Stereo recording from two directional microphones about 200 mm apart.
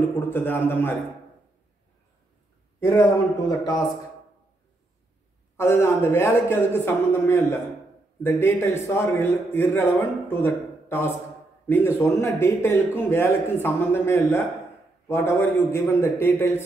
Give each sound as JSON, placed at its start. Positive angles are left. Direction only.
{"t": 0.0, "sound": "a man's voice", "side_deg": 10}
{"t": 3.4, "sound": "speech", "side_deg": 20}
{"t": 5.6, "sound": "a man's voice", "side_deg": 15}